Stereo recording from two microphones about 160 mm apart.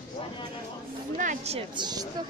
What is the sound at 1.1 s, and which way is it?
Speech, 45° right (ahead or behind).